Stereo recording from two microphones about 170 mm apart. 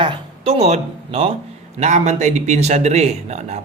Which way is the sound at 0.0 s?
30° right (ahead or behind).